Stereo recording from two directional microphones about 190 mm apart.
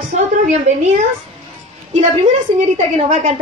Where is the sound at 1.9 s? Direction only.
35° right (ahead or behind).